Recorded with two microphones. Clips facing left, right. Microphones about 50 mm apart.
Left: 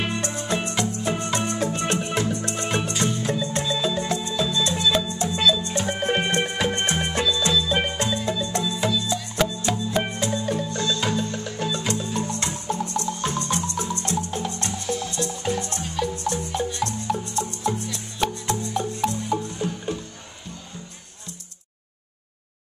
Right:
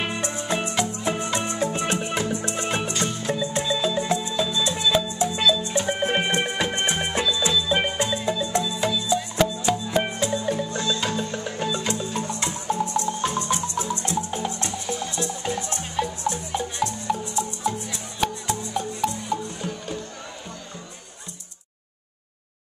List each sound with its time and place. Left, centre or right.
0.0 s music: centre
2.9 s music: centre
15.7 s marimba: centre
17.4 s music: centre